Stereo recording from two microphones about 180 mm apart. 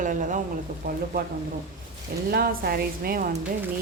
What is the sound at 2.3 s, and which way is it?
Speech, 55° right (ahead or behind).